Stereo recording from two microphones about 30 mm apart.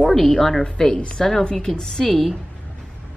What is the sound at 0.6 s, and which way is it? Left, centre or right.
A woman's voice, left.